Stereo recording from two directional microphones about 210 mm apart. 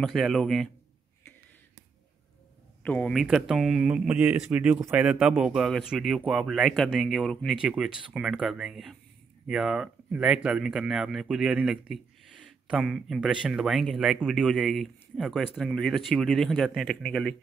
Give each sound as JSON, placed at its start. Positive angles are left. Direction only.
{"t": 0.0, "sound": "speech", "side_deg": 0}
{"t": 2.8, "sound": "speech", "side_deg": 5}